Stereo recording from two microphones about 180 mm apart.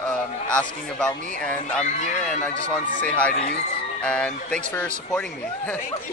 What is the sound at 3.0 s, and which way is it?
A man's voice, 5° left (ahead or behind).